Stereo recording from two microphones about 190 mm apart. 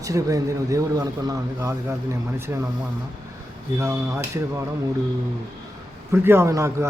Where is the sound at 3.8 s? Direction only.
15° right (ahead or behind).